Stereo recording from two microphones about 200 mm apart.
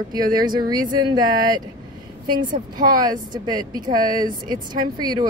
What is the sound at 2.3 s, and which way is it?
Speech, 40° right (ahead or behind).